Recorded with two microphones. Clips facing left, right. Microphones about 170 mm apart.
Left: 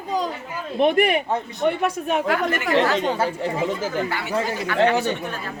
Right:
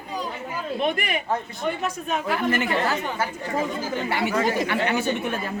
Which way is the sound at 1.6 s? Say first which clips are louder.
Left 8 dB; 70° left (ahead or behind).